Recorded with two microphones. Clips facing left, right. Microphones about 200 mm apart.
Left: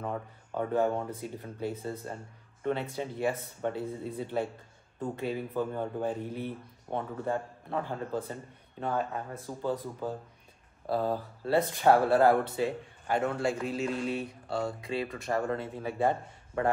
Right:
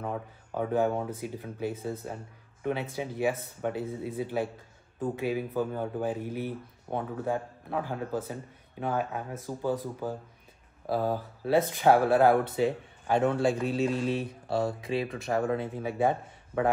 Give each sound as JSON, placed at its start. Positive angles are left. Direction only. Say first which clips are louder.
{"t": 0.0, "sound": "speech", "louder": "right 1 dB", "side_deg": -5}
{"t": 11.4, "sound": "a man's voice", "louder": "right 1 dB", "side_deg": -20}
{"t": 14.2, "sound": "speech", "louder": "right 4 dB", "side_deg": 0}
{"t": 15.4, "sound": "a man's voice", "louder": "right 3 dB", "side_deg": -20}